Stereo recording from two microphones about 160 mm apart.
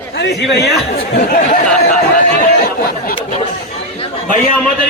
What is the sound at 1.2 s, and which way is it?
Speech, 50° left (ahead or behind).